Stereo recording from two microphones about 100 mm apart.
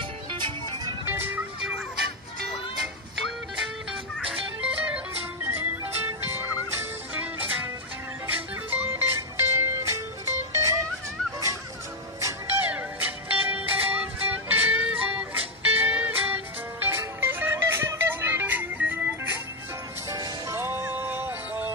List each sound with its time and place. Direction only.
0.3 s music: 55° right (ahead or behind)
1.0 s music: 20° right (ahead or behind)
3.9 s music: 5° right (ahead or behind); by 7.2 s 20° right (ahead or behind)
8.3 s music: 15° right (ahead or behind)
12.5 s music: 15° right (ahead or behind)
20.1 s music: 35° right (ahead or behind); by 21.7 s 20° right (ahead or behind)